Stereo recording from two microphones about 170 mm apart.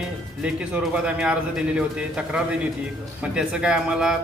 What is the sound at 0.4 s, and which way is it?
A man's voice, 5° right (ahead or behind).